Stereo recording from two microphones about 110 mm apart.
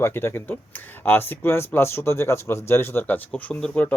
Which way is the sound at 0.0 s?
20° left (ahead or behind).